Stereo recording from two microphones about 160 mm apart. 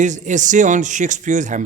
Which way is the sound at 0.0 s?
50° right (ahead or behind).